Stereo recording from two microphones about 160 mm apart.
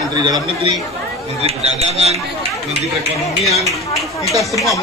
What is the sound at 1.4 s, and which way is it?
Speech, 40° right (ahead or behind).